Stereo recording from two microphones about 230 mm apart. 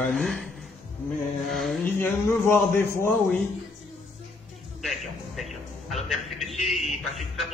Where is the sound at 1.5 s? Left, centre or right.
Centre.